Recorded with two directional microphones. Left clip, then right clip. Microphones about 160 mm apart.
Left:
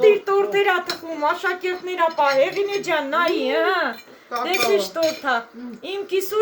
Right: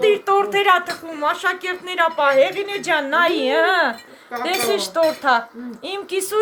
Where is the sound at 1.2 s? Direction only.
10° right (ahead or behind).